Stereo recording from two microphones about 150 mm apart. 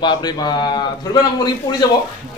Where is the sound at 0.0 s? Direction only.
30° left (ahead or behind).